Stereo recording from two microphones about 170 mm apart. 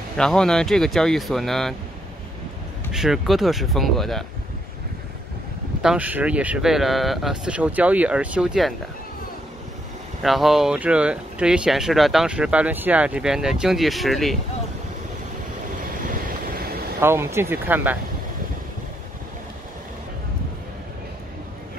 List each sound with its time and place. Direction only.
0.2 s speech: 5° left (ahead or behind)
2.9 s speech: centre (ahead or behind)
5.8 s speech: 5° right (ahead or behind)
10.2 s speech: centre (ahead or behind)
16.3 s vehicle: 55° right (ahead or behind)
17.0 s speech: 15° right (ahead or behind)